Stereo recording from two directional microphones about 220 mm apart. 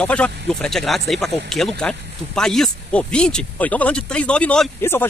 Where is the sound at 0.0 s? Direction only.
5° left (ahead or behind).